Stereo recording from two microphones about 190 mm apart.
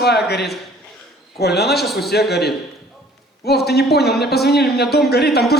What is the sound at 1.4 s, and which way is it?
Speech, 60° left (ahead or behind).